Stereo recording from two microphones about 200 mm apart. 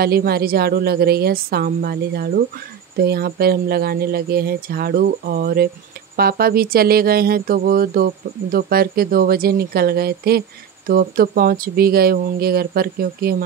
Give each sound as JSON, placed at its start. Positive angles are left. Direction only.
{"t": 0.0, "sound": "speech", "side_deg": -50}